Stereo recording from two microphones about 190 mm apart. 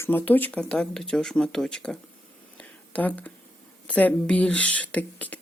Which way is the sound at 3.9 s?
5° left (ahead or behind).